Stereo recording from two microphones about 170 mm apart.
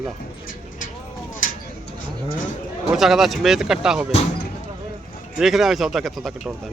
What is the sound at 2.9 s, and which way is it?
Speech, centre (ahead or behind).